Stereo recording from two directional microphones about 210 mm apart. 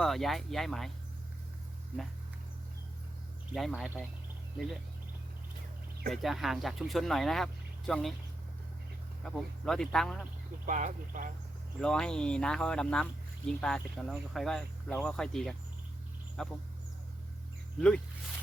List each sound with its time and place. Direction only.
0.0 s speech: centre (ahead or behind)
3.5 s speech: centre (ahead or behind)
6.1 s speech: centre (ahead or behind)
9.2 s speech: centre (ahead or behind)
10.7 s speech: 40° right (ahead or behind)
11.8 s speech: 5° left (ahead or behind)
17.7 s speech: 5° left (ahead or behind)